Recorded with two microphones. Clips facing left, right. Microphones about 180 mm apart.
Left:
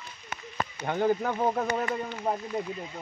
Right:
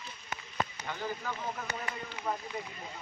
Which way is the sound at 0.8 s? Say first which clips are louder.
Left 12 dB; 55° left (ahead or behind).